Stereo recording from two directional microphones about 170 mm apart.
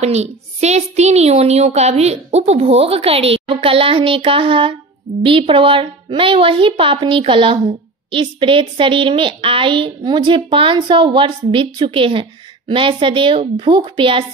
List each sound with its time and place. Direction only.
0.0 s a woman's voice: 40° right (ahead or behind)